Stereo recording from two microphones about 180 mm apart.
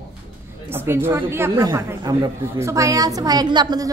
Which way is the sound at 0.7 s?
10° right (ahead or behind).